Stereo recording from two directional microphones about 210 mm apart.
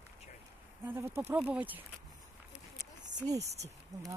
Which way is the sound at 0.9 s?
10° right (ahead or behind).